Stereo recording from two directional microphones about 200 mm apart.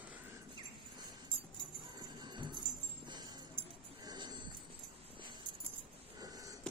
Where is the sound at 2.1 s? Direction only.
20° right (ahead or behind).